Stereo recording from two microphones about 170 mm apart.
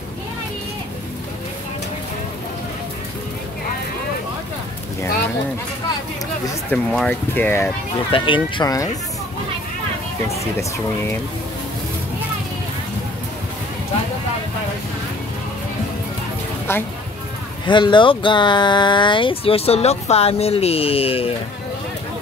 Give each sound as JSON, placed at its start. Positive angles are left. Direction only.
{"t": 6.7, "sound": "speech", "side_deg": 5}
{"t": 8.1, "sound": "speech", "side_deg": 30}
{"t": 17.6, "sound": "speech", "side_deg": 25}